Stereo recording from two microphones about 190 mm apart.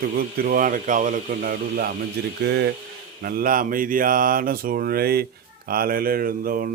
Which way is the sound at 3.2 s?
50° right (ahead or behind).